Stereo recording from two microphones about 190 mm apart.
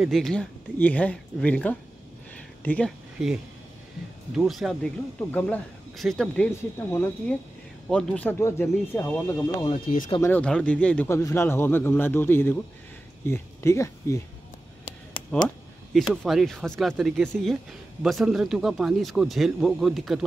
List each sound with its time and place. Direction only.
0.0 s speech: centre (ahead or behind)
9.8 s speech: 50° left (ahead or behind)
10.0 s speech: 20° left (ahead or behind)
10.3 s speech: 5° left (ahead or behind)
15.4 s speech: centre (ahead or behind)